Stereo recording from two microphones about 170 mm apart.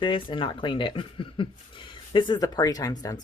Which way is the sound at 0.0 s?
30° left (ahead or behind).